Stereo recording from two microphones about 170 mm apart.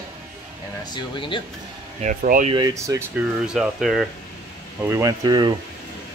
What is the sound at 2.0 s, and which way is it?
Speech, 50° right (ahead or behind).